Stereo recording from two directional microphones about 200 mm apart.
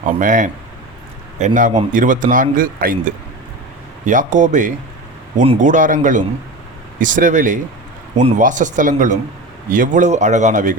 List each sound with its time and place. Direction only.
0.0 s a man's voice: 40° right (ahead or behind)